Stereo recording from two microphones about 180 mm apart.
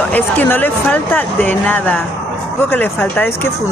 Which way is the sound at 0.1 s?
10° left (ahead or behind).